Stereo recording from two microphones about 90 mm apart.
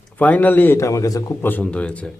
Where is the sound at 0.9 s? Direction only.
40° left (ahead or behind).